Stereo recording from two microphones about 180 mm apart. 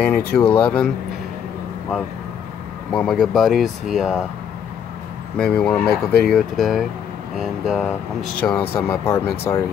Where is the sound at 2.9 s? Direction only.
5° left (ahead or behind).